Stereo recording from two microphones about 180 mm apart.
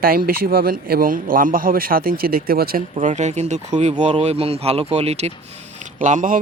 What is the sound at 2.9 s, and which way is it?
A man's voice, 40° right (ahead or behind).